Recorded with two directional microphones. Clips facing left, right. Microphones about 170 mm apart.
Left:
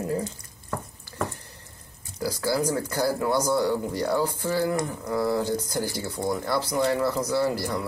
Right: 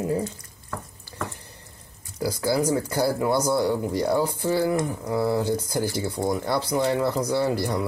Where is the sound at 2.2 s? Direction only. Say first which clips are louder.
Right 2 dB; 15° right (ahead or behind).